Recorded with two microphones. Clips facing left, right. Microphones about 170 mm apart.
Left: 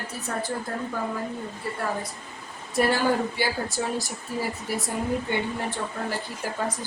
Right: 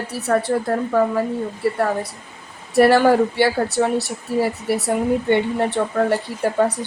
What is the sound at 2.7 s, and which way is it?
Speech, 70° right (ahead or behind).